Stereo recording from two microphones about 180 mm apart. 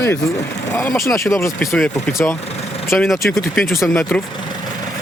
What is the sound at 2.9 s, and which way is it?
Speech, centre (ahead or behind).